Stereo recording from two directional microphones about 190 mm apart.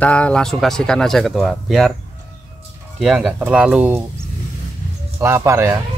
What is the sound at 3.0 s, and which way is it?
Speech, 5° right (ahead or behind).